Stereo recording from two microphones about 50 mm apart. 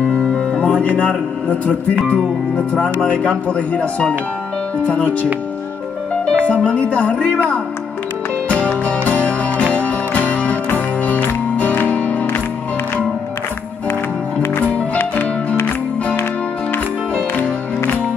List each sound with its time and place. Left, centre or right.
0.3 s music: left
2.8 s speech: centre
6.3 s speech: left
8.5 s music: left